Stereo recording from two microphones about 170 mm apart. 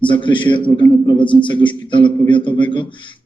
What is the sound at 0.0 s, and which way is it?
Speech, 30° left (ahead or behind).